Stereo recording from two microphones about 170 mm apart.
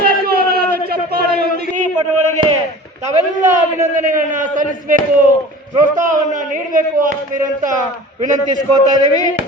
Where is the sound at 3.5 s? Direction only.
50° right (ahead or behind).